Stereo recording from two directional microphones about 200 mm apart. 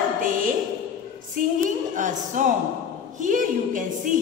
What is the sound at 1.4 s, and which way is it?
A woman's voice, 40° right (ahead or behind).